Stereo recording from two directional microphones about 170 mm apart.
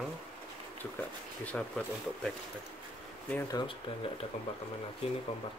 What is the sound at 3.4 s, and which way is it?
Speech, 25° left (ahead or behind).